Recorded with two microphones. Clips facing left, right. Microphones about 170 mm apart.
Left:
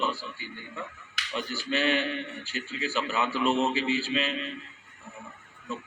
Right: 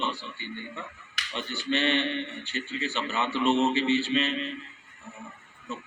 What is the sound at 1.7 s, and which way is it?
A man's voice, 5° left (ahead or behind).